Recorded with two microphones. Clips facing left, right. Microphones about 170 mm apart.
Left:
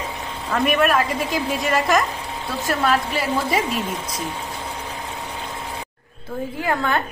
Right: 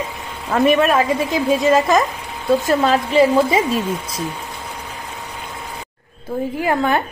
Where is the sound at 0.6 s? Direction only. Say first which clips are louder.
Right 4 dB; 25° right (ahead or behind).